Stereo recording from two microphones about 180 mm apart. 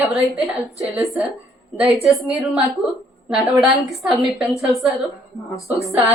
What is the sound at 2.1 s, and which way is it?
A woman's voice, centre (ahead or behind).